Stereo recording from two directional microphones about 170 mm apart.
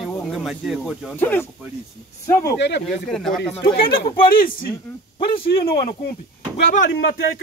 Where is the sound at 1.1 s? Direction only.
15° left (ahead or behind).